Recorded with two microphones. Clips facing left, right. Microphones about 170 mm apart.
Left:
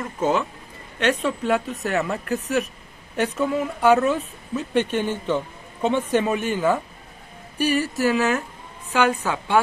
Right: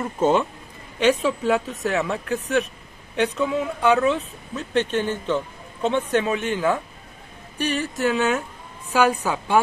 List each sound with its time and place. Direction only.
0.2 s speech: 30° right (ahead or behind)
0.9 s speech: 5° right (ahead or behind)
8.9 s a woman's voice: 10° right (ahead or behind)